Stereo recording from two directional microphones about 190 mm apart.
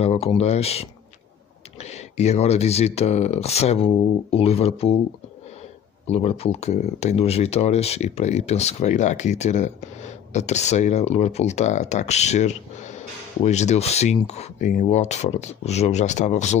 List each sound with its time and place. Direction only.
0.0 s speech: 30° left (ahead or behind)
6.0 s speech: 35° left (ahead or behind)